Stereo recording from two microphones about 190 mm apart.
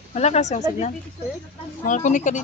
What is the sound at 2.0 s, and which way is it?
Speech, 40° left (ahead or behind).